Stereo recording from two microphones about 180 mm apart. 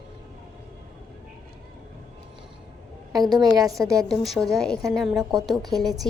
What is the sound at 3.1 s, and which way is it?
Speech, 20° right (ahead or behind).